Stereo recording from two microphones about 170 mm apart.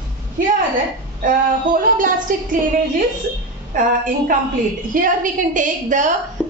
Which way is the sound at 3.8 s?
55° right (ahead or behind).